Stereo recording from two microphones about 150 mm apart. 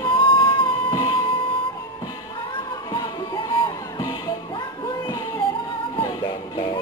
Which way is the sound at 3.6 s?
30° left (ahead or behind).